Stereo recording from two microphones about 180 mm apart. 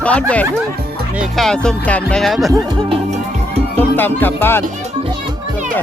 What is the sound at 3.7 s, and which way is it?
Speech, 10° left (ahead or behind).